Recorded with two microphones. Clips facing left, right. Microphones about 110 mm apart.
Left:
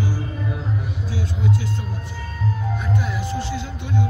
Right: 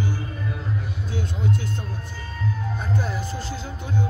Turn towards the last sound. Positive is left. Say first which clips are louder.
# left 2 dB
turn(degrees=-40)  # may be behind; listen again after turning